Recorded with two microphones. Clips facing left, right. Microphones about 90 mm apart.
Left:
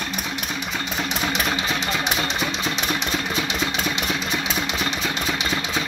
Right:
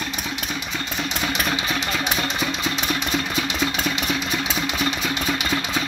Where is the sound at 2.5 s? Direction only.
Centre (ahead or behind).